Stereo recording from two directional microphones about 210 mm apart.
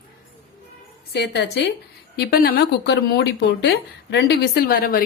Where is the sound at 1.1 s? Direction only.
55° left (ahead or behind).